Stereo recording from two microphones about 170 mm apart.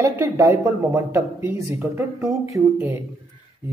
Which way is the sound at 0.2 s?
15° right (ahead or behind).